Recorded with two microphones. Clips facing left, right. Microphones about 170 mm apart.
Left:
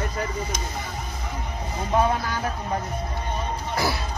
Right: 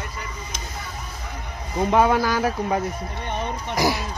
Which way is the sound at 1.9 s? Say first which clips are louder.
Right 4 dB; 90° right.